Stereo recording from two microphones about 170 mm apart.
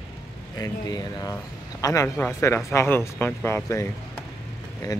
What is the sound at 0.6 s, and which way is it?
A man's voice, 20° left (ahead or behind).